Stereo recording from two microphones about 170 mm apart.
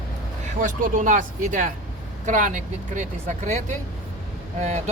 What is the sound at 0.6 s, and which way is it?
Speech, 50° right (ahead or behind).